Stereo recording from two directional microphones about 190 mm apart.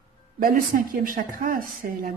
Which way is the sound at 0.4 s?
50° right (ahead or behind).